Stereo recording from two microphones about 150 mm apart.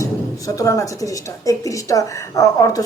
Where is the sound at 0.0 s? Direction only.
20° left (ahead or behind).